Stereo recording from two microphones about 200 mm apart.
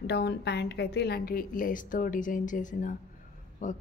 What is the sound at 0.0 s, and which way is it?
A woman's voice, 55° left (ahead or behind).